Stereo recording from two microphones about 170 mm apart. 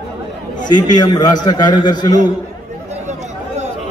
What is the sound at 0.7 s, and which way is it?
A man's voice, 25° left (ahead or behind).